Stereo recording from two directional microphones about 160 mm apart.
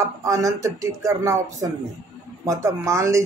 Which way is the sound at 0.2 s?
20° right (ahead or behind).